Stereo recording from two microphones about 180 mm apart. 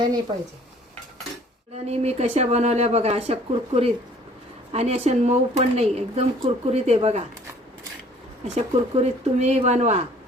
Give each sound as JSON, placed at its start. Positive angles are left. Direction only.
{"t": 1.9, "sound": "speech", "side_deg": -35}
{"t": 8.5, "sound": "speech", "side_deg": -40}